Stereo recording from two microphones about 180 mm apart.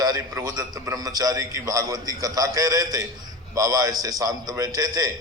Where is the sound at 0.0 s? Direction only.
20° right (ahead or behind).